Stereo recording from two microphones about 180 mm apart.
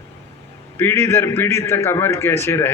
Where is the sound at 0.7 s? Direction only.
15° left (ahead or behind).